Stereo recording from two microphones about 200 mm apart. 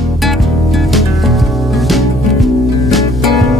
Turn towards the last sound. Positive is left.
turn(degrees=0)  # may be behind; listen again after turning